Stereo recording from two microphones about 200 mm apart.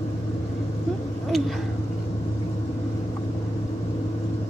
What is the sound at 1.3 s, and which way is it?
Speech, centre (ahead or behind).